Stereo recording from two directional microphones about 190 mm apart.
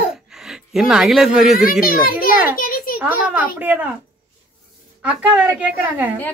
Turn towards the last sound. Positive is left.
turn(degrees=-5)  # may be behind; listen again after turning